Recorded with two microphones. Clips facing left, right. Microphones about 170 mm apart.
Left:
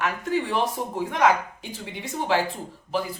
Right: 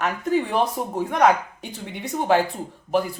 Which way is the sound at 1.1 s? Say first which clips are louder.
Right 3 dB; 50° right (ahead or behind).